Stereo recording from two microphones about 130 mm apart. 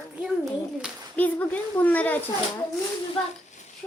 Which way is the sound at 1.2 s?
15° left (ahead or behind).